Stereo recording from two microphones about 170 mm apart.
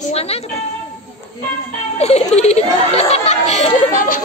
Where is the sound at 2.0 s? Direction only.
40° left (ahead or behind).